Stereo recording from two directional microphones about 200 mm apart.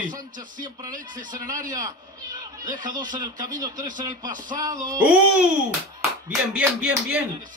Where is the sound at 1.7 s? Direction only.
20° right (ahead or behind).